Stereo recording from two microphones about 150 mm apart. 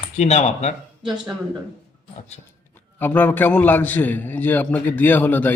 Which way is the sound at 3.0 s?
10° left (ahead or behind).